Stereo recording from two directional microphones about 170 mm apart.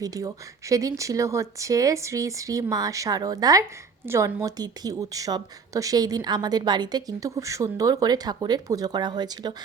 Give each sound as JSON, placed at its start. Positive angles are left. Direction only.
{"t": 0.0, "sound": "speech", "side_deg": -20}